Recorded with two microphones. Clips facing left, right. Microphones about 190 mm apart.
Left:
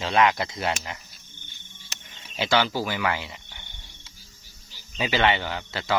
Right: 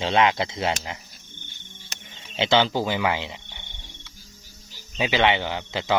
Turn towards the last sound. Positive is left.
turn(degrees=-15)  # may be behind; listen again after turning